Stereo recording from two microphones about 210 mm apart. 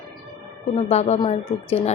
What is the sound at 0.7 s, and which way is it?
Speech, 30° left (ahead or behind).